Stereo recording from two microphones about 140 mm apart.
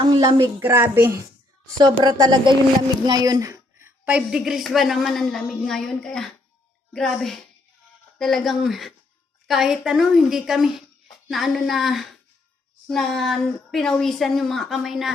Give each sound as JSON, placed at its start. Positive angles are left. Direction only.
{"t": 0.2, "sound": "a woman's voice", "side_deg": -30}
{"t": 0.6, "sound": "a child's voice", "side_deg": -15}
{"t": 1.6, "sound": "a woman's voice", "side_deg": -30}